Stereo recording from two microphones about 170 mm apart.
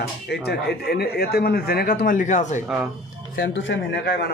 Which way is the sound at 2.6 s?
5° right (ahead or behind).